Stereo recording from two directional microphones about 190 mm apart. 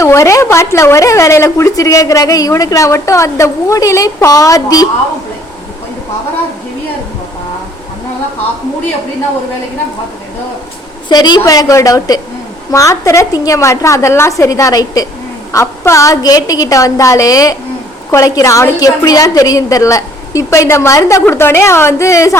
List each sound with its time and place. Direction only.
0.0 s a woman's voice: 15° left (ahead or behind)
11.1 s a woman's voice: 20° left (ahead or behind)